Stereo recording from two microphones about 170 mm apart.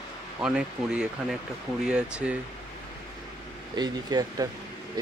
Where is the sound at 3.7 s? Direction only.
25° right (ahead or behind).